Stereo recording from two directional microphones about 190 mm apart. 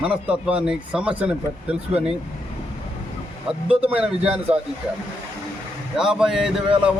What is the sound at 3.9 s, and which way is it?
Speech, 5° right (ahead or behind).